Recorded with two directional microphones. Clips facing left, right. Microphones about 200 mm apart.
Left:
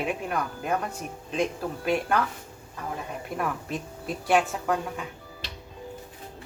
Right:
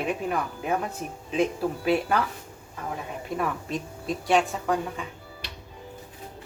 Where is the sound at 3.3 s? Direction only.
Centre (ahead or behind).